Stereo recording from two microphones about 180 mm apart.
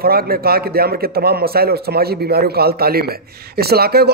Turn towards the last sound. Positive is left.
turn(degrees=-60)  # may be behind; listen again after turning